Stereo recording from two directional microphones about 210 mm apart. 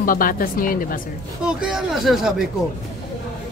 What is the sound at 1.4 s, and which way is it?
Speech, 5° right (ahead or behind).